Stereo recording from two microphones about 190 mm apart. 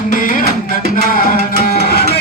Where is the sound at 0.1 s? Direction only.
45° left (ahead or behind).